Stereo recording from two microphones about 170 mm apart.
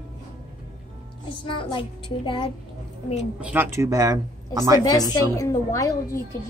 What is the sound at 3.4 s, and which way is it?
Speech, 10° right (ahead or behind).